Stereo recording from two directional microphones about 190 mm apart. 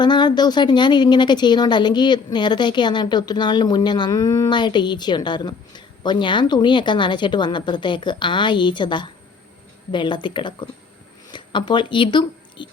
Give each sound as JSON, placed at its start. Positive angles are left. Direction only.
{"t": 0.0, "sound": "a woman's voice", "side_deg": 25}